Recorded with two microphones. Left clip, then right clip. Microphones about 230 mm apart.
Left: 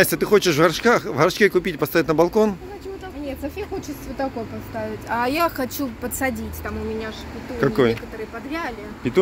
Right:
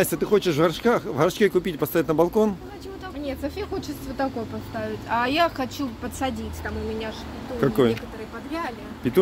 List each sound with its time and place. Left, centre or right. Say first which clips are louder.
0.0 s speech: left 4 dB; centre
5.1 s speech: left 1 dB; left
7.6 s speech: left 2 dB; centre
9.0 s speech: left 1 dB; centre